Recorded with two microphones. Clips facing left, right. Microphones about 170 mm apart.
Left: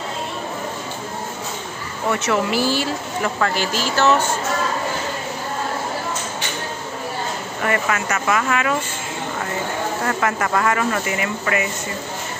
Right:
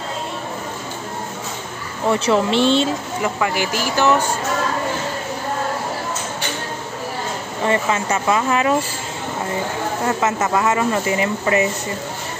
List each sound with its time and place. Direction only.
2.0 s speech: 30° right (ahead or behind)
3.3 s a sound: 15° right (ahead or behind)
7.6 s speech: 25° right (ahead or behind)
10.0 s speech: 20° right (ahead or behind)